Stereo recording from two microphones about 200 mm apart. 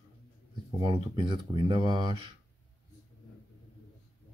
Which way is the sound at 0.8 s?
25° right (ahead or behind).